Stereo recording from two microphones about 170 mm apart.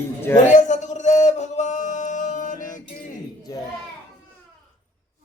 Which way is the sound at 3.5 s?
20° left (ahead or behind).